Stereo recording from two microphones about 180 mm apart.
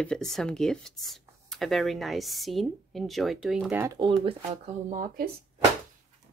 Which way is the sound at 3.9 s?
30° right (ahead or behind).